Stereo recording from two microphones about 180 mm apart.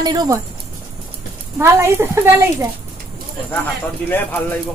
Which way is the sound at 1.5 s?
15° right (ahead or behind).